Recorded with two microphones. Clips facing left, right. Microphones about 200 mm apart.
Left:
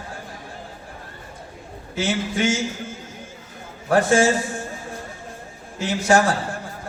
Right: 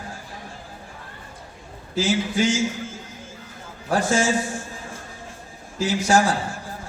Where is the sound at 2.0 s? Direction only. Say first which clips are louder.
Right 1 dB; 60° left (ahead or behind).